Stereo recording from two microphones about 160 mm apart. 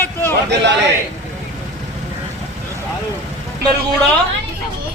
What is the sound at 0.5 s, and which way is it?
Speech, 90° right.